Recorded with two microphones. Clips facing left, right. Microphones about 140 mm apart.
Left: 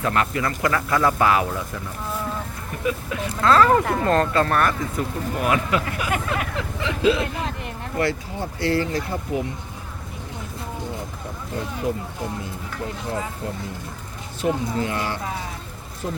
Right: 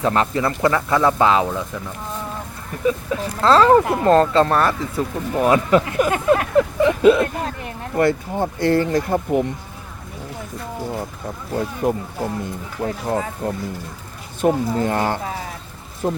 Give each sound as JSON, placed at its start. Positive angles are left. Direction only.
{"t": 0.0, "sound": "speech", "side_deg": -30}
{"t": 2.8, "sound": "speech", "side_deg": -30}
{"t": 6.6, "sound": "speech", "side_deg": -50}
{"t": 11.8, "sound": "speech", "side_deg": -50}
{"t": 12.8, "sound": "speech", "side_deg": -40}